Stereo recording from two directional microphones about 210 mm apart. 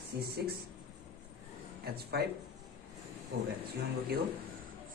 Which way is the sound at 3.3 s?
50° right (ahead or behind).